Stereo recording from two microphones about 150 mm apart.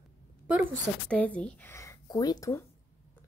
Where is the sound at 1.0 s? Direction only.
10° left (ahead or behind).